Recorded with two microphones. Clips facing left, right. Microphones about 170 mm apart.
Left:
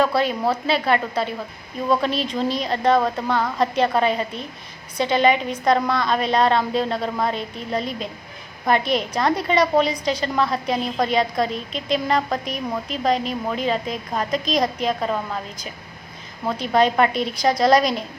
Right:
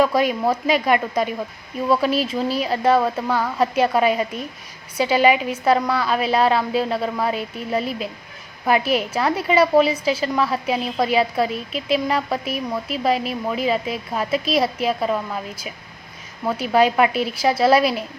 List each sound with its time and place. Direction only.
0.0 s a woman's voice: 10° right (ahead or behind)